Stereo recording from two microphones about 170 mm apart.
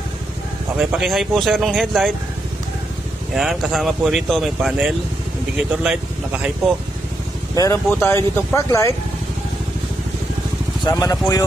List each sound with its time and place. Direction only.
0.7 s speech: 5° right (ahead or behind)
3.3 s speech: centre (ahead or behind)
7.5 s speech: 20° left (ahead or behind)
10.8 s speech: 20° left (ahead or behind)